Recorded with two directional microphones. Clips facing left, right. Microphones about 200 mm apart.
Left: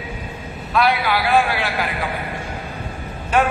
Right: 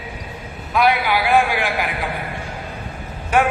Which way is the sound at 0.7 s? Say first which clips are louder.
Right 1 dB; 15° right (ahead or behind).